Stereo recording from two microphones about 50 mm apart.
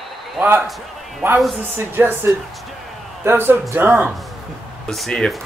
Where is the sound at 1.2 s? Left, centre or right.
Right.